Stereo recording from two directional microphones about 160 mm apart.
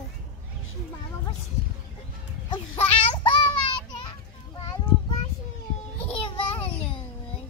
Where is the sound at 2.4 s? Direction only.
40° left (ahead or behind).